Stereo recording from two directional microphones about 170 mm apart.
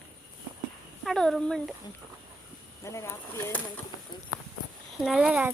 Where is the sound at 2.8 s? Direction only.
15° left (ahead or behind).